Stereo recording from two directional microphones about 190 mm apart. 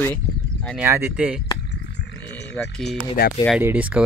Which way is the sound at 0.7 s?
10° right (ahead or behind).